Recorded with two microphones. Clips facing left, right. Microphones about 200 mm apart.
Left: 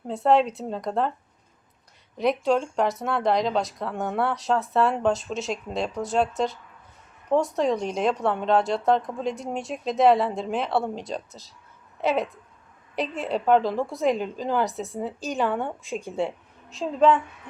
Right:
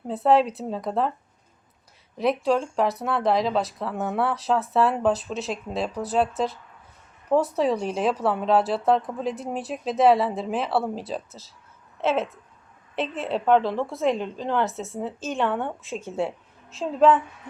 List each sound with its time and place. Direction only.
0.1 s speech: centre (ahead or behind)
2.1 s a woman's voice: centre (ahead or behind)